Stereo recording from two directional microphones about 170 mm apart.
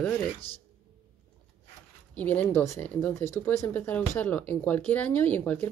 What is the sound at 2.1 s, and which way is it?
Speech, 10° left (ahead or behind).